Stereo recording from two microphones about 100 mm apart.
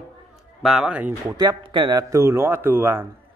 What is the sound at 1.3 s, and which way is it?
Speech, 40° right (ahead or behind).